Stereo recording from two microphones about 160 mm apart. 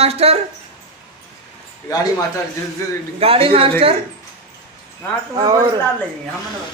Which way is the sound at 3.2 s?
35° right (ahead or behind).